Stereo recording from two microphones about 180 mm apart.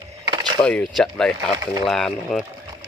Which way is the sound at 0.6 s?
5° left (ahead or behind).